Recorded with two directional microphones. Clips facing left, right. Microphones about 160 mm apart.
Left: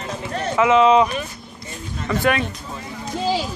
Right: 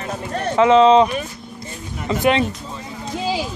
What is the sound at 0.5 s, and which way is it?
Speech, 30° right (ahead or behind).